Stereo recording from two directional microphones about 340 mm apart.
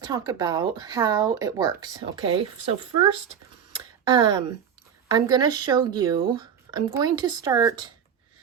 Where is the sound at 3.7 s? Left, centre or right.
Centre.